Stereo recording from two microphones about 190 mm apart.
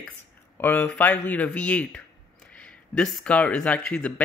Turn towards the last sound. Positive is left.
turn(degrees=5)  # may be behind; listen again after turning